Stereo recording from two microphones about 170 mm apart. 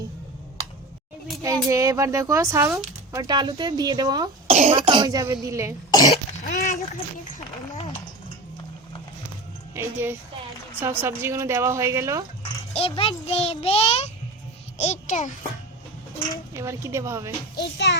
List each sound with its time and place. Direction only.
1.4 s speech: 20° right (ahead or behind)
4.4 s speech: 40° right (ahead or behind); by 5.7 s 20° right (ahead or behind)
5.9 s speech: 25° left (ahead or behind)
6.4 s a sound: 50° left (ahead or behind)
9.7 s a woman's voice: 15° right (ahead or behind)
12.4 s a child's voice: 35° left (ahead or behind)
16.6 s a woman's voice: 15° right (ahead or behind)